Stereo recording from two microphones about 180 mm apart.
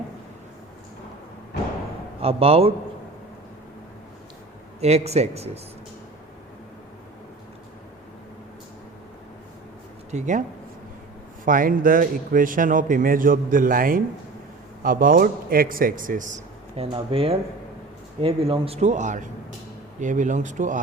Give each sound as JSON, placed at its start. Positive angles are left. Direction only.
{"t": 2.2, "sound": "speech", "side_deg": -35}
{"t": 4.8, "sound": "speech", "side_deg": -35}
{"t": 10.1, "sound": "a man's voice", "side_deg": -40}
{"t": 11.4, "sound": "a man's voice", "side_deg": -50}